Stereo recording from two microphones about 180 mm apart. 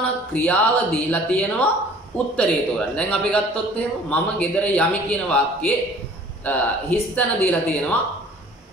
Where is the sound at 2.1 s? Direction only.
10° left (ahead or behind).